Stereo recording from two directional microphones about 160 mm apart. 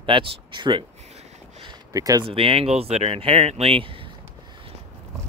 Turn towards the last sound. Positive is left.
turn(degrees=-35)  # may be behind; listen again after turning